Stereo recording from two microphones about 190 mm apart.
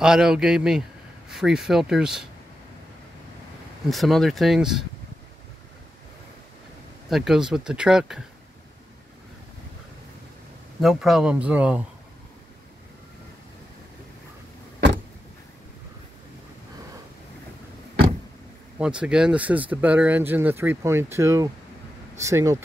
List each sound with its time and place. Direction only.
0.0 s speech: 5° right (ahead or behind)
3.9 s speech: centre (ahead or behind)
7.1 s speech: centre (ahead or behind)
10.8 s speech: centre (ahead or behind)
18.8 s speech: 5° right (ahead or behind)